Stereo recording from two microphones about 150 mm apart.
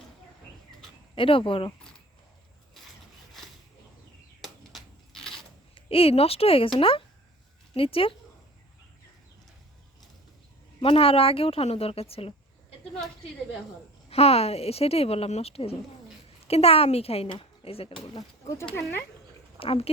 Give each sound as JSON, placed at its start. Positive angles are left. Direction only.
{"t": 1.1, "sound": "speech", "side_deg": 35}
{"t": 4.4, "sound": "a sound", "side_deg": 0}
{"t": 5.7, "sound": "a woman's voice", "side_deg": 40}
{"t": 10.8, "sound": "speech", "side_deg": 40}
{"t": 14.1, "sound": "speech", "side_deg": 40}
{"t": 18.0, "sound": "speech", "side_deg": 25}
{"t": 19.5, "sound": "speech", "side_deg": 40}